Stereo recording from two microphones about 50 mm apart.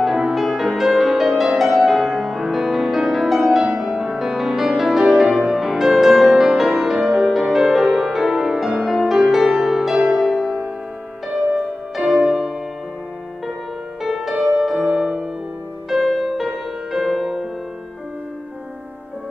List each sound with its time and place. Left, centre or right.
0.0 s music: centre
3.6 s music: centre
12.0 s music: centre
14.0 s music: centre
14.8 s music: centre
16.1 s music: centre